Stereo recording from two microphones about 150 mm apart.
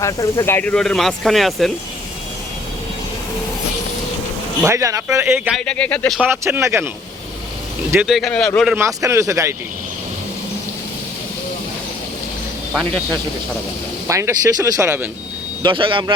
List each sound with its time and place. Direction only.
0.0 s speech: 20° left (ahead or behind); by 1.7 s centre (ahead or behind)
4.6 s speech: 20° right (ahead or behind)
5.5 s speech: 5° left (ahead or behind)
6.1 s speech: 15° right (ahead or behind)
8.0 s speech: centre (ahead or behind)
8.7 s speech: 20° right (ahead or behind)
12.7 s speech: centre (ahead or behind)
14.1 s speech: 20° right (ahead or behind)
15.6 s speech: 35° right (ahead or behind)